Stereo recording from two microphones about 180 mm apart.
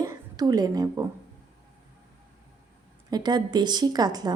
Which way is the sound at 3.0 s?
25° right (ahead or behind).